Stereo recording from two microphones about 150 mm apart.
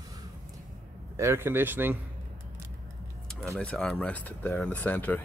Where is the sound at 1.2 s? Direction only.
15° right (ahead or behind).